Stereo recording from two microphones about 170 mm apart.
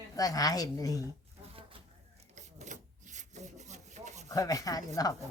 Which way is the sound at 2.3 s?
45° right (ahead or behind).